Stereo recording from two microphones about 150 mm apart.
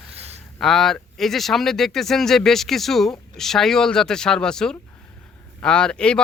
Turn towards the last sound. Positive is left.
turn(degrees=5)  # may be behind; listen again after turning